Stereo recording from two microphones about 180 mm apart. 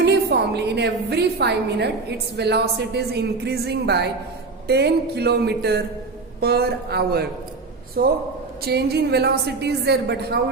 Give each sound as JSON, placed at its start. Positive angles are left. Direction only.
{"t": 0.0, "sound": "a woman's voice", "side_deg": -65}